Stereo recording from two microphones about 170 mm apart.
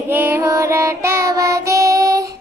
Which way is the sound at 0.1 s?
15° right (ahead or behind).